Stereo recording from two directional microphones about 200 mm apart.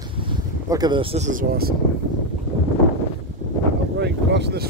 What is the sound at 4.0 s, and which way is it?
Speech, 60° right (ahead or behind).